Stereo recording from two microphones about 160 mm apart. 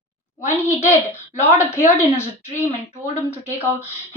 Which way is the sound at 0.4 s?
50° left (ahead or behind).